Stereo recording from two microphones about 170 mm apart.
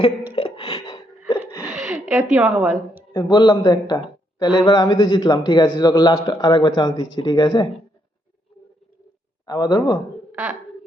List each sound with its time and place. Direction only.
0.3 s a sound: 35° left (ahead or behind)
1.8 s a woman's voice: 10° right (ahead or behind)
3.1 s a man's voice: 25° left (ahead or behind)
9.5 s speech: 25° left (ahead or behind)
10.3 s speech: 5° right (ahead or behind)